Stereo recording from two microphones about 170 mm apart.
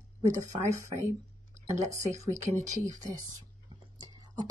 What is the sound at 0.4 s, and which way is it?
Speech, 20° right (ahead or behind).